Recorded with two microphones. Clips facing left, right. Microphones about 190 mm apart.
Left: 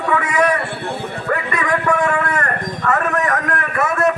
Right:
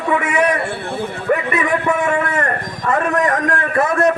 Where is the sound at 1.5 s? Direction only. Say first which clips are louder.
Right 1 dB; 25° right (ahead or behind).